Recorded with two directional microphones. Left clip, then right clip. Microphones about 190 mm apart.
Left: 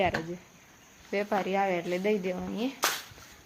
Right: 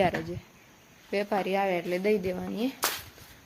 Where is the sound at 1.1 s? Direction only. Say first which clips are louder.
Right 1 dB; 10° right (ahead or behind).